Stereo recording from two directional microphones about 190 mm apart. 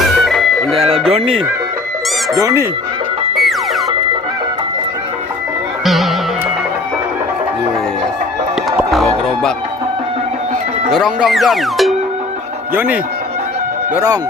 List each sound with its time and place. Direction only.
0.2 s music: centre (ahead or behind)
0.8 s music: 30° right (ahead or behind)
1.1 s speech: 30° right (ahead or behind)
2.3 s speech: 15° right (ahead or behind)
5.8 s music: centre (ahead or behind)
8.9 s music: centre (ahead or behind)
10.9 s speech: centre (ahead or behind)
12.7 s speech: 10° right (ahead or behind)